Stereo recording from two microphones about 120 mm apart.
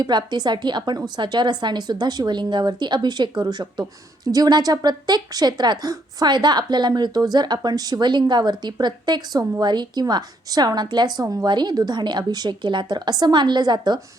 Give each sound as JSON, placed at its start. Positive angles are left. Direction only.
{"t": 0.0, "sound": "speech", "side_deg": -35}